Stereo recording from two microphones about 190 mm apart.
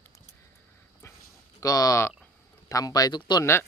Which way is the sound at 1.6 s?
20° left (ahead or behind).